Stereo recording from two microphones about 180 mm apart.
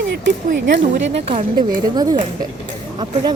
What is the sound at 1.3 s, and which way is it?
Speech, 35° right (ahead or behind).